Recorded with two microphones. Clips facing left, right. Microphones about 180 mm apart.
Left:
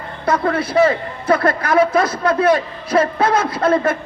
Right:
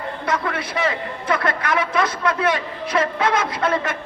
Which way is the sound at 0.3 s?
35° left (ahead or behind).